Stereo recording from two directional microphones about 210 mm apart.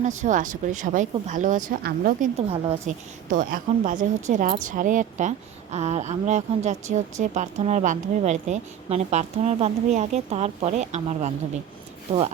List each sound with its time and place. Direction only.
0.2 s speech: 40° right (ahead or behind)
2.5 s speech: 30° right (ahead or behind)